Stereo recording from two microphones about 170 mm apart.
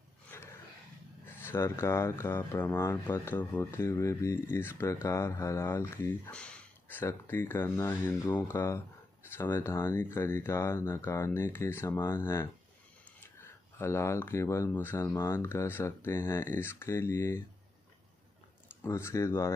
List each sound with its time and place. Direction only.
1.2 s speech: 15° left (ahead or behind)
18.8 s speech: 15° left (ahead or behind)